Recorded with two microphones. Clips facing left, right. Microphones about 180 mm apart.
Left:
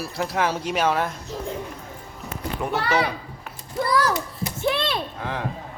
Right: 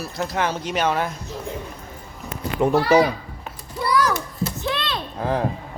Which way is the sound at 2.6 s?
35° right (ahead or behind).